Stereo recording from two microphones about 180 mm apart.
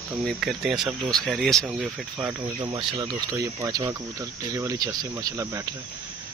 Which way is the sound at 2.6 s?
25° right (ahead or behind).